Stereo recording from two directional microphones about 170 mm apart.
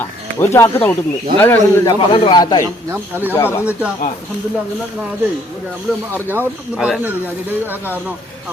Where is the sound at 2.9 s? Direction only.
10° right (ahead or behind).